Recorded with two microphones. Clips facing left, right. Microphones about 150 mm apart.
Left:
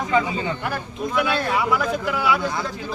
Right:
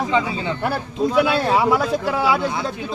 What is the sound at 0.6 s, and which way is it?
Speech, 30° right (ahead or behind).